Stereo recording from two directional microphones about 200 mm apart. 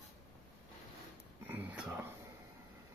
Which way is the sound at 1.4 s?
10° right (ahead or behind).